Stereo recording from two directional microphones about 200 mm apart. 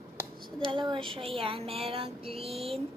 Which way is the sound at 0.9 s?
25° right (ahead or behind).